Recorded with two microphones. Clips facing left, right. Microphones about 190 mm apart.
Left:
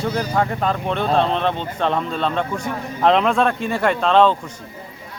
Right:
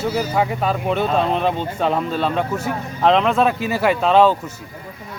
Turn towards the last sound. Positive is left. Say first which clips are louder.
# right 1 dB
turn(degrees=-5)  # may be behind; listen again after turning